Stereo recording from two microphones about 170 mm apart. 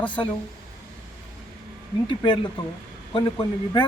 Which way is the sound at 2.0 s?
30° left (ahead or behind).